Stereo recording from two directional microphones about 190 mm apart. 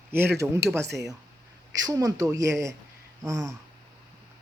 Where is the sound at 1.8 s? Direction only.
20° right (ahead or behind).